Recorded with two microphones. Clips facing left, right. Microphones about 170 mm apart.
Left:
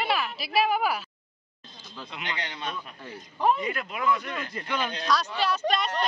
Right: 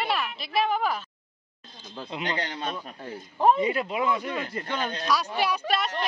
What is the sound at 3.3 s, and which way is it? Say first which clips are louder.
Speech: right 4 dB; 25° right (ahead or behind).